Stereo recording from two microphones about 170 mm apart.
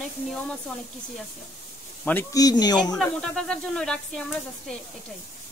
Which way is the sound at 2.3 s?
25° left (ahead or behind).